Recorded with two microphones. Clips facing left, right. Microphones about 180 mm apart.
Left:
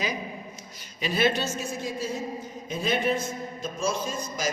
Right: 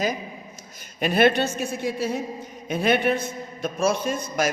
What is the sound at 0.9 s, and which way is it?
A man's voice, 55° right (ahead or behind).